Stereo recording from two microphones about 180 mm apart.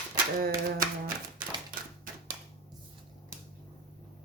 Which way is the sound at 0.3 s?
55° right (ahead or behind).